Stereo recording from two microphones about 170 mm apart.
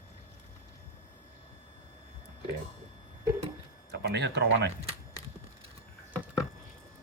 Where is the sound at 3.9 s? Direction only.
90° right.